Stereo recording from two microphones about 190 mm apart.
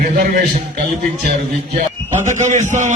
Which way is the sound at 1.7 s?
40° right (ahead or behind).